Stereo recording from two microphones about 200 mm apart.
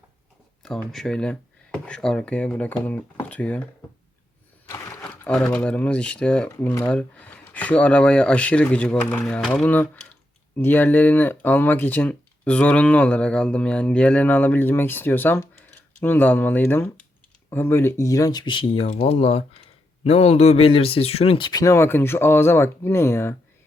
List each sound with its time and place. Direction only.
0.6 s speech: centre (ahead or behind)
5.0 s a sound: 5° left (ahead or behind)
5.4 s speech: 5° left (ahead or behind)